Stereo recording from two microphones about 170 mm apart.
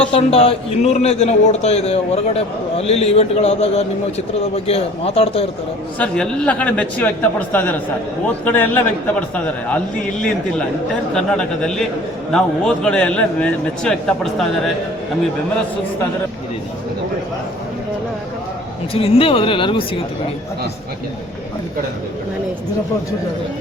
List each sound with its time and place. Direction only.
0.1 s a man's voice: 35° left (ahead or behind)
6.0 s a man's voice: 10° left (ahead or behind)
18.9 s a man's voice: 35° left (ahead or behind)